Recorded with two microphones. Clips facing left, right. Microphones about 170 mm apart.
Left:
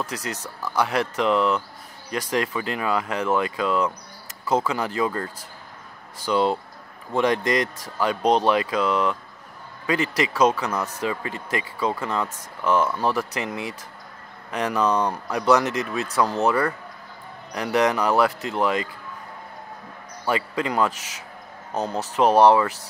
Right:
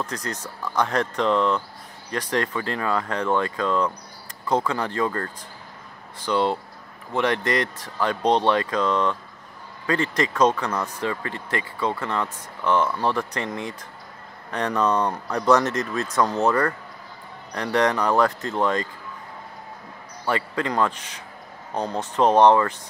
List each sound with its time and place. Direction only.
0.6 s speech: 5° left (ahead or behind)
20.2 s speech: 15° left (ahead or behind)